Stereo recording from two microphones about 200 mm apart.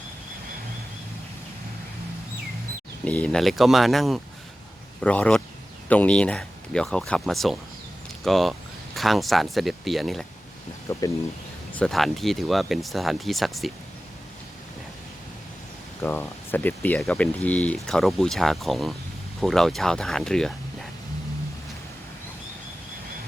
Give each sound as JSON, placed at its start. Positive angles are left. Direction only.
{"t": 3.0, "sound": "speech", "side_deg": 5}
{"t": 10.9, "sound": "speech", "side_deg": 15}
{"t": 11.7, "sound": "speech", "side_deg": 5}
{"t": 16.0, "sound": "speech", "side_deg": 10}